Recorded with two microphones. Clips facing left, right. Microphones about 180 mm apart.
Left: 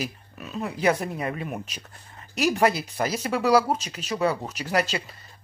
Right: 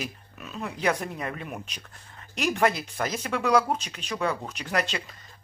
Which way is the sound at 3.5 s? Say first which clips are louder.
Left 2 dB; 10° left (ahead or behind).